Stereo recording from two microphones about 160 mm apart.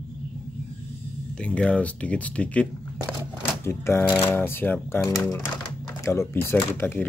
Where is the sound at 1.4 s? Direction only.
5° left (ahead or behind).